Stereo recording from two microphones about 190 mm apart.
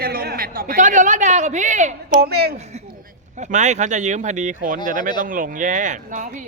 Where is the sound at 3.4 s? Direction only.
40° right (ahead or behind).